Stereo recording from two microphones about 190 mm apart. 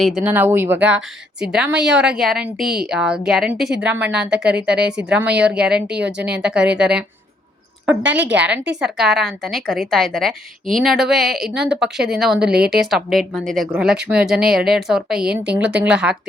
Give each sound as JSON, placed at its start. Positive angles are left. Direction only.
{"t": 0.0, "sound": "a woman's voice", "side_deg": -5}
{"t": 6.1, "sound": "speech", "side_deg": -65}
{"t": 6.3, "sound": "a woman's voice", "side_deg": -5}
{"t": 12.5, "sound": "speech", "side_deg": -55}
{"t": 12.8, "sound": "a woman's voice", "side_deg": 0}